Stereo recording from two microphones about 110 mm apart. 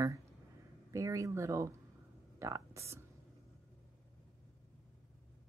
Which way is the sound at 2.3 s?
30° right (ahead or behind).